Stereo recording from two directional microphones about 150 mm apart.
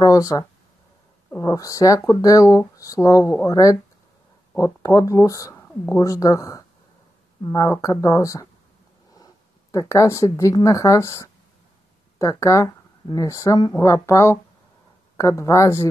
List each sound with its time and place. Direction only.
0.0 s speech: 25° left (ahead or behind)